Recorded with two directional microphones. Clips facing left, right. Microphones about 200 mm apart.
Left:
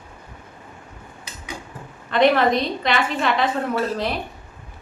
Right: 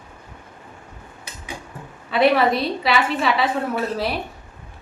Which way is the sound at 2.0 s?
5° right (ahead or behind).